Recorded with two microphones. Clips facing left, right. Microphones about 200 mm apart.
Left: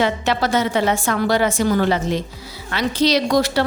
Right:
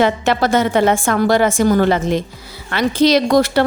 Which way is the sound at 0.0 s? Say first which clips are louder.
Right 4 dB; 50° right (ahead or behind).